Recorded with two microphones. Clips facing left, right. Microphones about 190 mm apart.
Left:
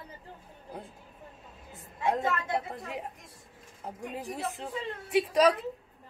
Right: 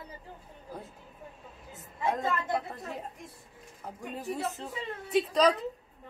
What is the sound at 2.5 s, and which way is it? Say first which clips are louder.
Speech: even; 15° left (ahead or behind).